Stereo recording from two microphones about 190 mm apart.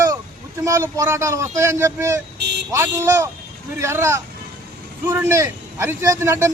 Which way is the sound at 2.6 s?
15° right (ahead or behind).